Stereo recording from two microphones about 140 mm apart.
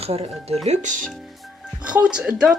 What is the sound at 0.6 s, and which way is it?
Speech, 65° right (ahead or behind).